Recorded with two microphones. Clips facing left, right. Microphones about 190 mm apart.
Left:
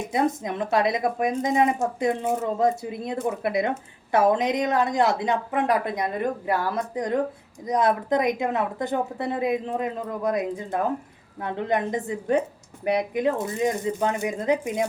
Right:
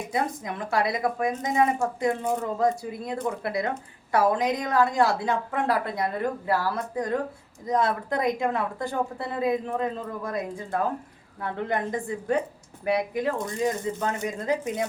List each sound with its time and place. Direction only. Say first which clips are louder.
0.1 s speech: left 5 dB; 20° left (ahead or behind)